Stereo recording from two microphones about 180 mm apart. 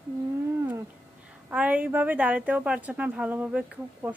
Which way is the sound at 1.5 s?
10° right (ahead or behind).